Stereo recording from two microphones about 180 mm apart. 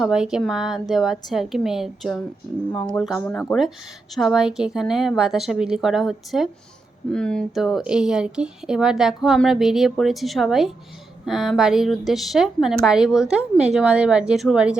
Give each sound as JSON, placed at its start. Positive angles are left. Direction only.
{"t": 0.0, "sound": "speech", "side_deg": -5}